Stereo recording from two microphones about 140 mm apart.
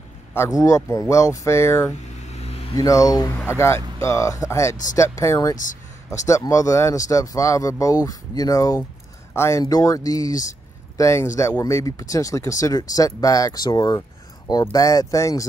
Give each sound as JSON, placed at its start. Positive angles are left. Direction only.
{"t": 0.3, "sound": "speech", "side_deg": 20}
{"t": 2.3, "sound": "vehicle", "side_deg": 45}
{"t": 2.7, "sound": "speech", "side_deg": 25}